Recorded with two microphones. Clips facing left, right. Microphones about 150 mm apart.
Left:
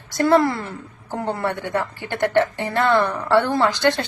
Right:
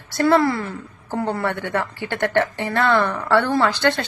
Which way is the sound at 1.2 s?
20° left (ahead or behind).